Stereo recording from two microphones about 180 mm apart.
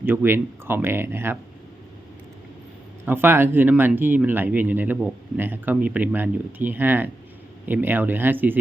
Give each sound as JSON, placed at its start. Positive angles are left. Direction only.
{"t": 0.0, "sound": "speech", "side_deg": -10}
{"t": 3.1, "sound": "speech", "side_deg": -10}